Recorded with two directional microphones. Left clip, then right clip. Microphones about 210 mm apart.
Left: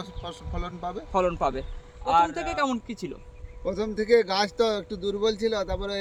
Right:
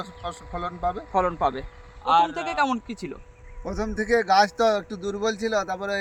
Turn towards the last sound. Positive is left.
turn(degrees=-10)  # may be behind; listen again after turning